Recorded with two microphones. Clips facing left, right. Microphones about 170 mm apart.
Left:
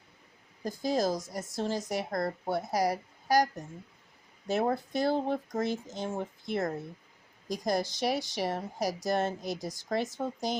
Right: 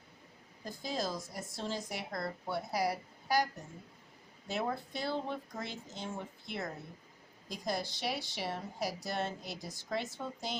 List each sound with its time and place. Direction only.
0.6 s speech: 40° left (ahead or behind)